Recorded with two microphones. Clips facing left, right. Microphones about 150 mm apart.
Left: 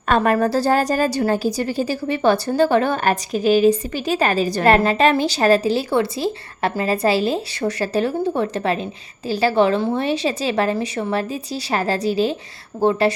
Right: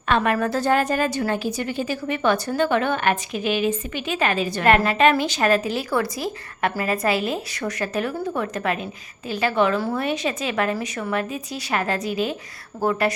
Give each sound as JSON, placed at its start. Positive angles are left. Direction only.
{"t": 0.1, "sound": "a woman's voice", "side_deg": 35}